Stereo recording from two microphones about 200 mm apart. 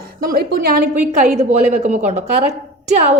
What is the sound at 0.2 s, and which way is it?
A woman's voice, 50° right (ahead or behind).